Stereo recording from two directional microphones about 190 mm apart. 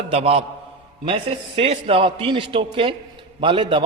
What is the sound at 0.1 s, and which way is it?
A man's voice, 30° right (ahead or behind).